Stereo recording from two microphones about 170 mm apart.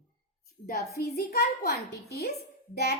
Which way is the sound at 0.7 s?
65° left (ahead or behind).